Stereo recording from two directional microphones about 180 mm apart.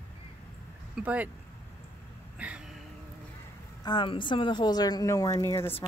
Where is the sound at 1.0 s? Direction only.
10° right (ahead or behind).